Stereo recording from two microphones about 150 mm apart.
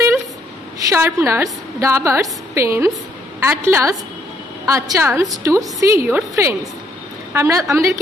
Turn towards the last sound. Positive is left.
turn(degrees=-20)  # may be behind; listen again after turning